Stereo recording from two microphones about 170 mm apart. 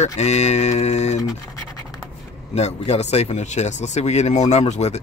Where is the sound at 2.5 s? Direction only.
40° left (ahead or behind).